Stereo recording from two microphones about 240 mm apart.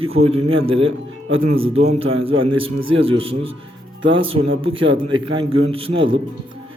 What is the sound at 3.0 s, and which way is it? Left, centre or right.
A man's voice, right.